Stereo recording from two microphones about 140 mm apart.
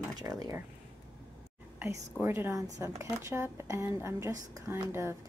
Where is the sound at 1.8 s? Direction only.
20° right (ahead or behind).